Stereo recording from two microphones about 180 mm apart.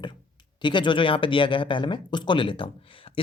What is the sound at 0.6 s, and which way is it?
Speech, 25° left (ahead or behind).